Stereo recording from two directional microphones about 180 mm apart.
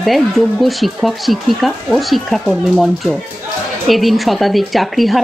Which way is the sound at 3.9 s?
Centre (ahead or behind).